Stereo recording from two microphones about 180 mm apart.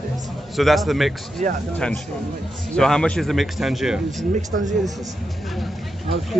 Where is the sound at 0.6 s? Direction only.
Centre (ahead or behind).